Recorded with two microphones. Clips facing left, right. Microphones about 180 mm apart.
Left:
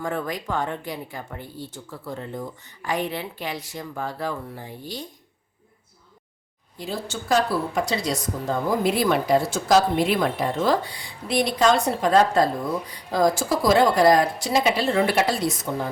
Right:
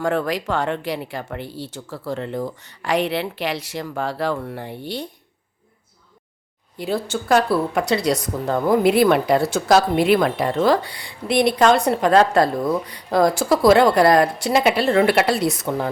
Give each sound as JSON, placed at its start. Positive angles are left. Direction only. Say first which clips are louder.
{"t": 0.0, "sound": "speech", "louder": "right 6 dB", "side_deg": -80}
{"t": 6.7, "sound": "speech", "louder": "right 7 dB", "side_deg": -65}